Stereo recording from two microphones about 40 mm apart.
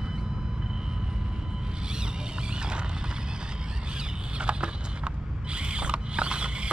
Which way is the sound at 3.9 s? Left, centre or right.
Right.